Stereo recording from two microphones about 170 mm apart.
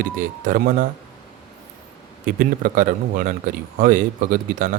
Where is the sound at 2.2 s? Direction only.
55° right (ahead or behind).